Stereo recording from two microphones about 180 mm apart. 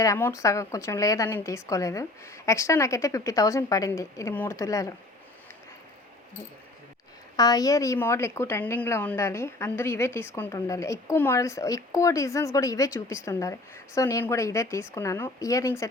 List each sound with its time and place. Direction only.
0.0 s a woman's voice: 15° left (ahead or behind)
7.3 s a woman's voice: 20° left (ahead or behind)